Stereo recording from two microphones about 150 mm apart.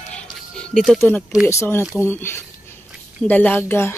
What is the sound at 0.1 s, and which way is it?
Music, 5° left (ahead or behind).